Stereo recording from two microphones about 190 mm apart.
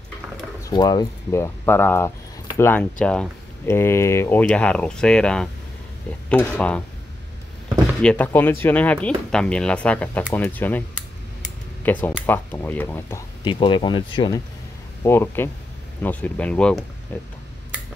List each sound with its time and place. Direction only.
0.7 s speech: 20° left (ahead or behind)
8.0 s speech: 5° left (ahead or behind)
11.8 s speech: 10° left (ahead or behind)
13.4 s speech: 25° left (ahead or behind)
15.0 s speech: 15° left (ahead or behind)